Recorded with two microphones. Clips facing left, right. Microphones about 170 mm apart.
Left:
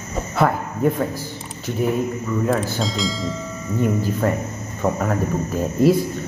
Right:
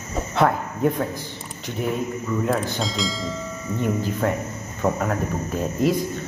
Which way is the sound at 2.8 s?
Centre (ahead or behind).